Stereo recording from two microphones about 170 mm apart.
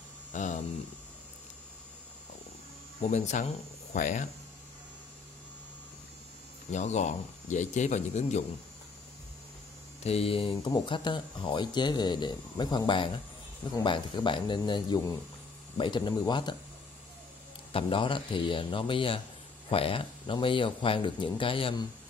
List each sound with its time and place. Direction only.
0.3 s a sound: 45° left (ahead or behind)
3.0 s speech: 45° left (ahead or behind)
6.7 s speech: 45° left (ahead or behind)
10.0 s speech: 35° left (ahead or behind)
17.7 s speech: 30° left (ahead or behind)